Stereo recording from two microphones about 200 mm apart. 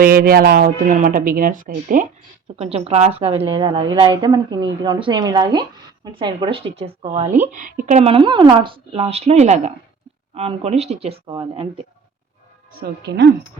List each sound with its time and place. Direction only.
0.0 s speech: 45° right (ahead or behind)
2.6 s a woman's voice: 30° right (ahead or behind)
13.0 s a woman's voice: 60° right (ahead or behind)